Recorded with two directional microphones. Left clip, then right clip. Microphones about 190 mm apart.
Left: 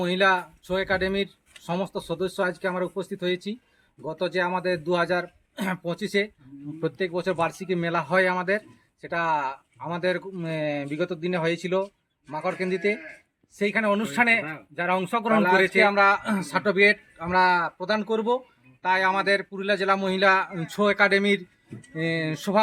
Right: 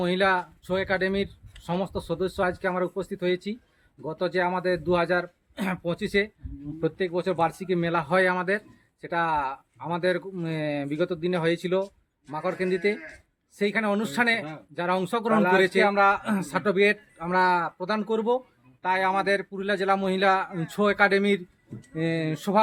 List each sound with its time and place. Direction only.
0.0 s a man's voice: 10° right (ahead or behind)
13.9 s speech: 40° right (ahead or behind)
15.4 s a man's voice: 10° right (ahead or behind)